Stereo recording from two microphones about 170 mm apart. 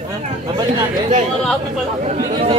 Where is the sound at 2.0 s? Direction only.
40° right (ahead or behind).